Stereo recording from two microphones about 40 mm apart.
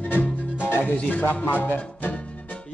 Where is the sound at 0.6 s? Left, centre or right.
Left.